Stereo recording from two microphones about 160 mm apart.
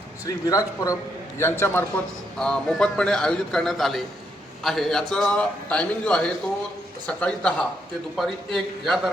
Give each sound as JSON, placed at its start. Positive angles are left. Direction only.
{"t": 0.3, "sound": "speech", "side_deg": 20}
{"t": 2.4, "sound": "a man's voice", "side_deg": 5}